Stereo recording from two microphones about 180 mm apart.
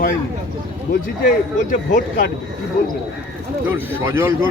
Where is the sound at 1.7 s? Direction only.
45° left (ahead or behind).